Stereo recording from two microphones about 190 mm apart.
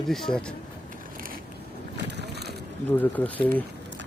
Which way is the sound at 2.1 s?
60° right (ahead or behind).